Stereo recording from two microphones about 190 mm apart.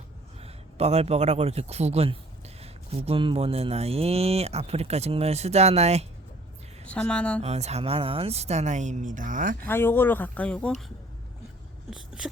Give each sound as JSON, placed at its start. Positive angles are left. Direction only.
{"t": 0.3, "sound": "a man's voice", "side_deg": -30}
{"t": 2.6, "sound": "mantra", "side_deg": -30}
{"t": 6.8, "sound": "a woman's voice", "side_deg": 5}
{"t": 7.4, "sound": "mantra", "side_deg": -35}
{"t": 9.6, "sound": "speech", "side_deg": 10}